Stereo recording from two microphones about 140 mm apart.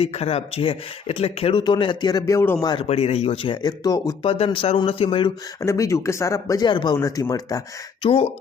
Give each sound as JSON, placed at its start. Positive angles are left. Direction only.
{"t": 0.0, "sound": "speech", "side_deg": 45}
{"t": 1.5, "sound": "speech", "side_deg": 30}
{"t": 2.8, "sound": "speech", "side_deg": 45}
{"t": 4.2, "sound": "speech", "side_deg": 45}
{"t": 5.6, "sound": "speech", "side_deg": 20}
{"t": 8.0, "sound": "speech", "side_deg": 45}